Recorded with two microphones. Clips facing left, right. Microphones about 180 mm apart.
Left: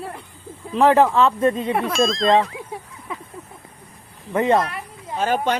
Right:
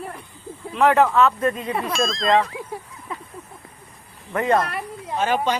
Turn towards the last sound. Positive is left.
turn(degrees=50)  # may be behind; listen again after turning